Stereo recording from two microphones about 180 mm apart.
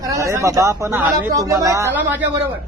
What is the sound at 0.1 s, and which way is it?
A man's voice, 15° right (ahead or behind).